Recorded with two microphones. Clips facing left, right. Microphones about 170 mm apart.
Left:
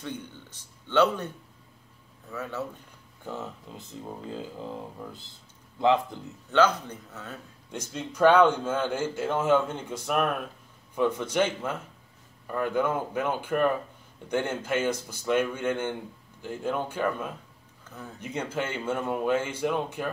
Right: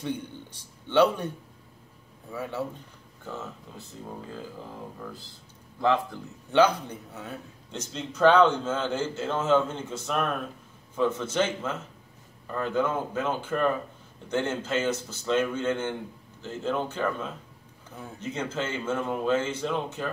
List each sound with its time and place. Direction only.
0.0 s a man's voice: 15° right (ahead or behind)
3.3 s a man's voice: 15° left (ahead or behind)
5.0 s speech: 20° left (ahead or behind)
6.5 s a man's voice: 10° right (ahead or behind)
7.7 s a man's voice: 10° left (ahead or behind)
17.8 s a sound: 10° right (ahead or behind)
18.2 s a man's voice: 15° left (ahead or behind)